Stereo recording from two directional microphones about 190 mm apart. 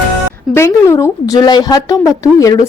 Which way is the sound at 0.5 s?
15° left (ahead or behind).